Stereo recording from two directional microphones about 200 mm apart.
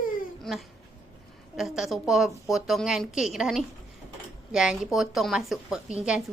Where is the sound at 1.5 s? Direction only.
Centre (ahead or behind).